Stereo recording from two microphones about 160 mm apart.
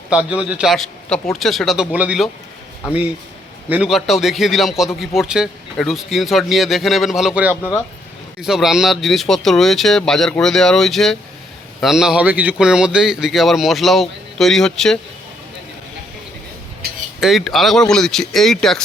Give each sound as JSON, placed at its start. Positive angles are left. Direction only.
{"t": 0.3, "sound": "a man's voice", "side_deg": -5}
{"t": 3.7, "sound": "a man's voice", "side_deg": -5}
{"t": 7.5, "sound": "speech", "side_deg": 15}
{"t": 8.4, "sound": "a man's voice", "side_deg": -5}
{"t": 17.2, "sound": "a man's voice", "side_deg": 0}